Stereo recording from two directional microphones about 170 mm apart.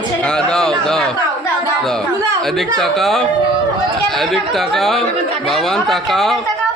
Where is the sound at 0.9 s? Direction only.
5° left (ahead or behind).